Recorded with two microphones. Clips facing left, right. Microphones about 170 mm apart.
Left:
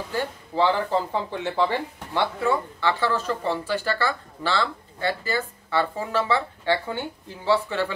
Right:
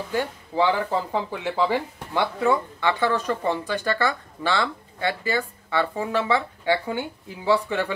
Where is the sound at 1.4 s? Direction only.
10° right (ahead or behind).